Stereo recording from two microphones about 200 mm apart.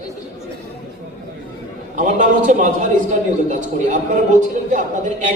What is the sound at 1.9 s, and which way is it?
A woman's voice, 40° right (ahead or behind).